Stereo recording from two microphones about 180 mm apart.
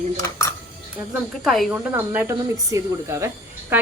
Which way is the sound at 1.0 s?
Centre (ahead or behind).